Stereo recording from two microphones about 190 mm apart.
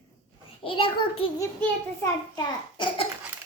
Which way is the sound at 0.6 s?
25° left (ahead or behind).